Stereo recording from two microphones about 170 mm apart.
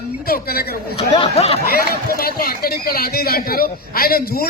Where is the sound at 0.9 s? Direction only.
35° left (ahead or behind).